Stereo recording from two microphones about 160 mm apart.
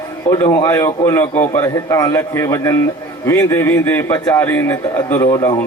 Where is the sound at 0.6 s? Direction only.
15° left (ahead or behind).